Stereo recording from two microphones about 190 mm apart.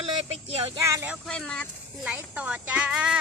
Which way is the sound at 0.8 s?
10° right (ahead or behind).